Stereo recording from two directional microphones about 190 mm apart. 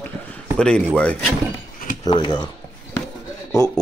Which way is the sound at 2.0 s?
25° left (ahead or behind).